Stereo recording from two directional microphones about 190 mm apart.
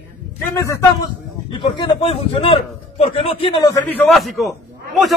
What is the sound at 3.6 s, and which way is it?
Speech, 10° left (ahead or behind).